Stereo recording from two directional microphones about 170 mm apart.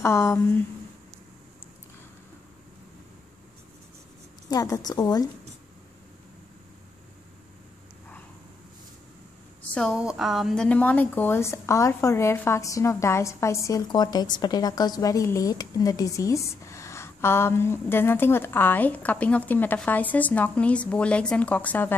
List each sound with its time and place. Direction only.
0.0 s a woman's voice: 15° left (ahead or behind)
4.5 s a woman's voice: 20° left (ahead or behind)
9.6 s a woman's voice: 5° left (ahead or behind)